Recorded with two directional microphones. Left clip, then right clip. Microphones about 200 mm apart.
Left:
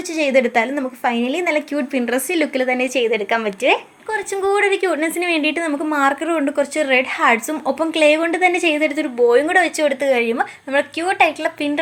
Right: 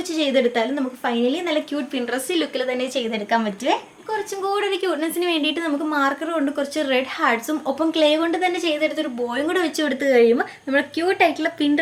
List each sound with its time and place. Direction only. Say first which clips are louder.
0.3 s speech: left 4 dB; 35° left (ahead or behind)
4.1 s a woman's voice: left 5 dB; 25° left (ahead or behind)